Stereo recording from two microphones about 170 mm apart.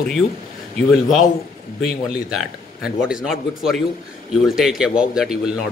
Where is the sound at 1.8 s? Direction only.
Centre (ahead or behind).